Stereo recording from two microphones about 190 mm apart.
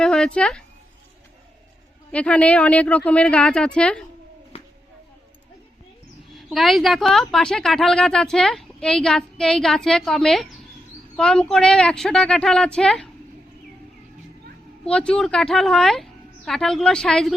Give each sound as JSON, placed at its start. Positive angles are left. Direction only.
{"t": 0.0, "sound": "speech", "side_deg": 5}
{"t": 2.1, "sound": "a woman's voice", "side_deg": 5}
{"t": 4.5, "sound": "a sound", "side_deg": 30}
{"t": 6.3, "sound": "a woman's voice", "side_deg": 0}
{"t": 14.8, "sound": "a woman's voice", "side_deg": 5}